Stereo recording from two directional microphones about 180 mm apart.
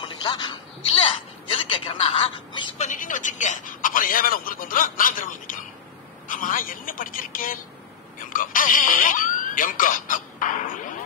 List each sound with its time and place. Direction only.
0.0 s speech: 25° left (ahead or behind)
2.9 s speech: 45° left (ahead or behind)